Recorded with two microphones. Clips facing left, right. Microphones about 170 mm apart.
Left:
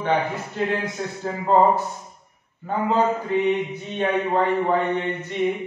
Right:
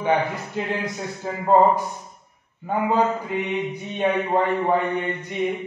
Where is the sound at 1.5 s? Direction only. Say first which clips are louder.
Right 1 dB; 10° right (ahead or behind).